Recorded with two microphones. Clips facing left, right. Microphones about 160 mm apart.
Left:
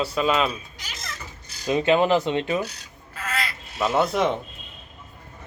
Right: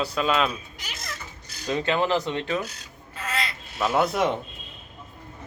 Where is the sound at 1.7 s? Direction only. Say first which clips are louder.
Left 5 dB; 20° left (ahead or behind).